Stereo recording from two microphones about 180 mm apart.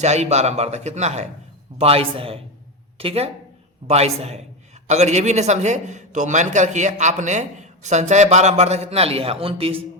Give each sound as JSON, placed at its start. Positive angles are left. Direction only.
{"t": 0.0, "sound": "a man's voice", "side_deg": -40}